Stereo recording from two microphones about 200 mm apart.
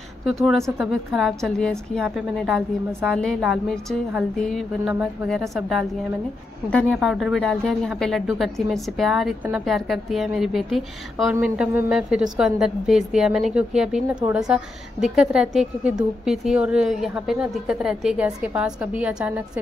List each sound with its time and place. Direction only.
0.2 s a woman's voice: centre (ahead or behind)